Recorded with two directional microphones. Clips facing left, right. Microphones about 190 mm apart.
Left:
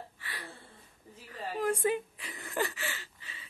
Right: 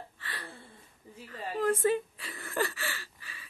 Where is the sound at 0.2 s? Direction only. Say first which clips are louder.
Right 3 dB; 15° left (ahead or behind).